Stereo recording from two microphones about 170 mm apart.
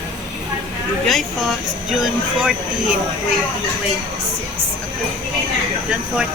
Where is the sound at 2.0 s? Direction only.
5° right (ahead or behind).